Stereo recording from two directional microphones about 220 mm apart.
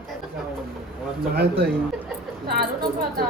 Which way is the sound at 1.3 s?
45° right (ahead or behind).